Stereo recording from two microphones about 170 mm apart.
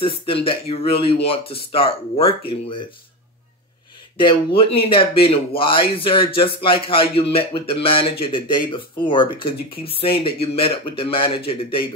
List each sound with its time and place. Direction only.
0.0 s speech: 30° left (ahead or behind)
4.6 s speech: 35° left (ahead or behind)